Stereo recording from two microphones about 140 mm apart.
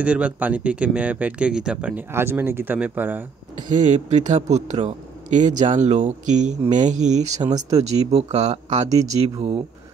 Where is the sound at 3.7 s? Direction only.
60° right (ahead or behind).